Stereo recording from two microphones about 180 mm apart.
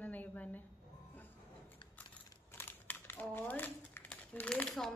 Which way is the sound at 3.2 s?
10° left (ahead or behind).